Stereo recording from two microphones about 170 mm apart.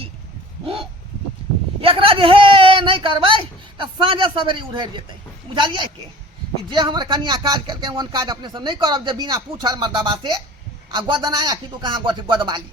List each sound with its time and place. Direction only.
1.8 s speech: 35° right (ahead or behind)